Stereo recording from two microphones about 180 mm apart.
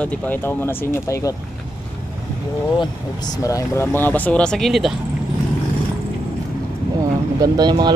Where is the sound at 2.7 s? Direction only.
20° left (ahead or behind); by 5.0 s centre (ahead or behind).